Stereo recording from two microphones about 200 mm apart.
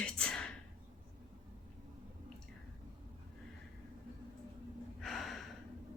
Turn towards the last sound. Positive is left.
turn(degrees=0)  # may be behind; listen again after turning